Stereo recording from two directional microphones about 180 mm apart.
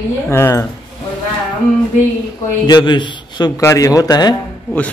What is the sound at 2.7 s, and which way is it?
A man's voice, 25° left (ahead or behind).